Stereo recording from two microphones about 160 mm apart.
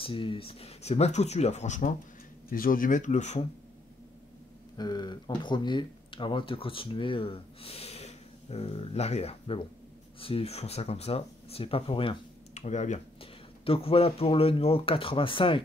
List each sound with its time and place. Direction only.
0.0 s speech: 35° left (ahead or behind); by 2.0 s 50° left (ahead or behind)
2.5 s speech: 60° left (ahead or behind); by 3.4 s 45° left (ahead or behind)
4.7 s speech: 25° left (ahead or behind)
12.5 s speech: 50° left (ahead or behind)